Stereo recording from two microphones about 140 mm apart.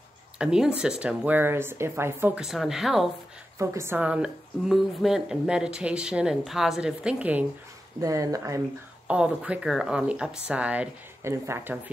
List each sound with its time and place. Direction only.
0.4 s a woman's voice: 5° right (ahead or behind)
3.5 s a woman's voice: 20° right (ahead or behind)
8.0 s speech: 25° right (ahead or behind)
9.0 s a woman's voice: 5° right (ahead or behind)